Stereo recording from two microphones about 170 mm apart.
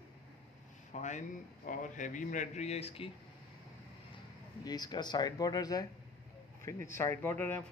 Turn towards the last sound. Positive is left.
turn(degrees=10)  # may be behind; listen again after turning